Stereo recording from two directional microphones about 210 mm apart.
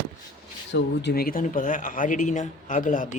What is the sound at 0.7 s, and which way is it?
Speech, 55° left (ahead or behind).